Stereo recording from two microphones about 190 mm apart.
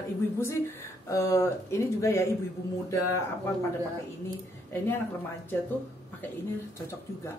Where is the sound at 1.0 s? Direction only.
15° left (ahead or behind).